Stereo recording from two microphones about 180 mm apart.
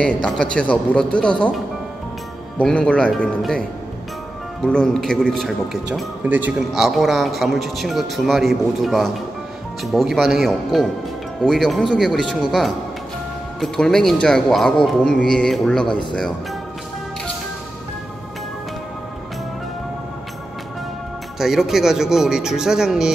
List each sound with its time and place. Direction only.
0.0 s a man's voice: 5° left (ahead or behind)
2.6 s a man's voice: 5° left (ahead or behind)
4.6 s a man's voice: 5° left (ahead or behind)
15.9 s speech: 25° left (ahead or behind)
21.4 s a man's voice: centre (ahead or behind)